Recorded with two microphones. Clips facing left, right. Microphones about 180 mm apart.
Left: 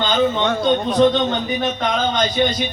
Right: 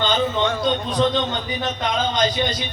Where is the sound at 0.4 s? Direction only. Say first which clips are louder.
Left 4 dB; 50° left (ahead or behind).